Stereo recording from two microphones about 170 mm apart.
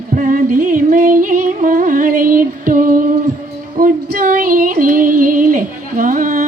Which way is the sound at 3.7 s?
55° right (ahead or behind).